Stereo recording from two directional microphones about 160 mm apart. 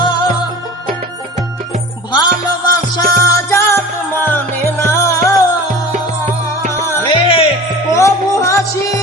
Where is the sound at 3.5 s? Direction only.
20° left (ahead or behind).